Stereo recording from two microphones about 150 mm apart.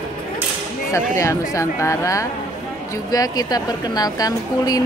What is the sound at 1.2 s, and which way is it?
Speech, 20° left (ahead or behind).